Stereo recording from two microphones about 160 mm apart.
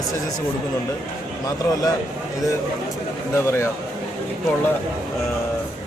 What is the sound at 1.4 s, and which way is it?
Speech, 25° left (ahead or behind).